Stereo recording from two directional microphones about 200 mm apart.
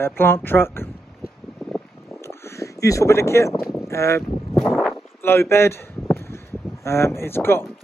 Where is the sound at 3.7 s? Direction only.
15° left (ahead or behind).